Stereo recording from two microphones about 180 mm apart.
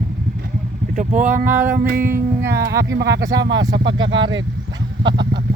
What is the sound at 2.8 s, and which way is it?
Speech, 70° right (ahead or behind).